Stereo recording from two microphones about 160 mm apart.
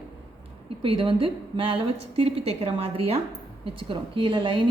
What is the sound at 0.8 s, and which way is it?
A woman's voice, 35° right (ahead or behind).